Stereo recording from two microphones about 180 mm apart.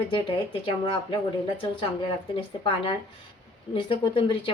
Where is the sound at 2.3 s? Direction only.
30° left (ahead or behind).